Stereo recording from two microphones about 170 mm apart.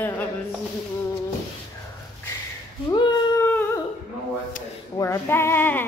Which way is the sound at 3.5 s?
10° left (ahead or behind).